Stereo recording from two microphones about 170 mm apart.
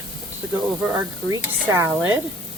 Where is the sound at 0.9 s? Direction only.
15° right (ahead or behind).